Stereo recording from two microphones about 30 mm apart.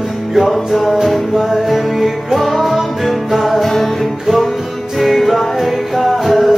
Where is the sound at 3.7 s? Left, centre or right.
Centre.